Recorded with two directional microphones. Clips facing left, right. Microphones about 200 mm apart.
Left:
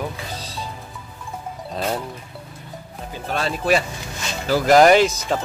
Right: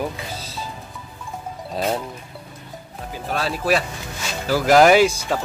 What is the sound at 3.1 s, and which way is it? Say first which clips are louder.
Speech: even; 5° right (ahead or behind).